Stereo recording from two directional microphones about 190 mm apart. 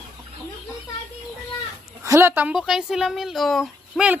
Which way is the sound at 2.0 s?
15° right (ahead or behind).